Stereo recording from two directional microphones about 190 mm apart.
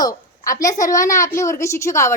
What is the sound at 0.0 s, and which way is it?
A woman's voice, 20° left (ahead or behind).